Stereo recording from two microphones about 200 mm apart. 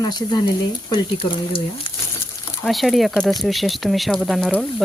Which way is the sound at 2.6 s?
Centre (ahead or behind).